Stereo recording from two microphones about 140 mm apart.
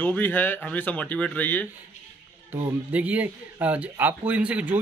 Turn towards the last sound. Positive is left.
turn(degrees=-10)  # may be behind; listen again after turning